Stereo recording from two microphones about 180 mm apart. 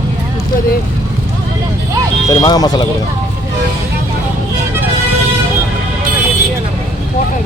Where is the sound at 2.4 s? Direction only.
20° left (ahead or behind).